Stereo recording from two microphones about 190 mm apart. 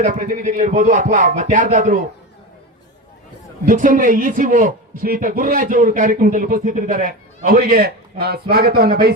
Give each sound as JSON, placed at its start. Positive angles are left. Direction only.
{"t": 0.0, "sound": "a man's voice", "side_deg": -45}
{"t": 3.7, "sound": "a man's voice", "side_deg": -45}